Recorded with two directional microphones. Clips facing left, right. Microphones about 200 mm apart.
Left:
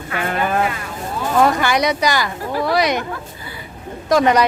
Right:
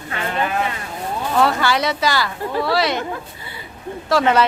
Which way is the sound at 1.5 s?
15° left (ahead or behind).